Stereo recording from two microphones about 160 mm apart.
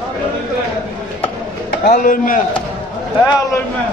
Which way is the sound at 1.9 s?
55° left (ahead or behind).